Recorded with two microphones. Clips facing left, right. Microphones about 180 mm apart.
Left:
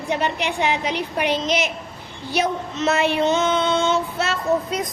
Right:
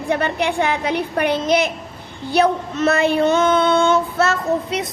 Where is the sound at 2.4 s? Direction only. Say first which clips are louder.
Right 5 dB; 55° right (ahead or behind).